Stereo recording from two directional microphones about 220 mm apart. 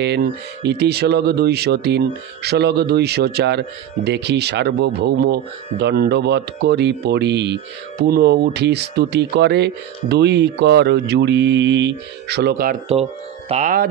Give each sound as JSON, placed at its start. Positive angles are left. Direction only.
{"t": 0.0, "sound": "speech", "side_deg": -50}